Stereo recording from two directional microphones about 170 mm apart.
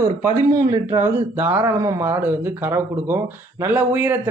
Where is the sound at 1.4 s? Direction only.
10° right (ahead or behind).